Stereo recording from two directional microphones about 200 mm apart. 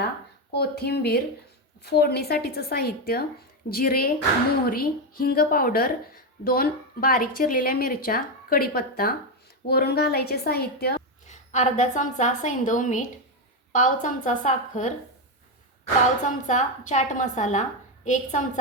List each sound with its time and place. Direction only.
0.5 s a woman's voice: 55° left (ahead or behind)
11.3 s a woman's voice: 35° left (ahead or behind)